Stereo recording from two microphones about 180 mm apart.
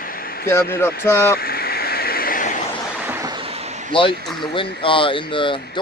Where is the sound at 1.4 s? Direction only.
55° left (ahead or behind).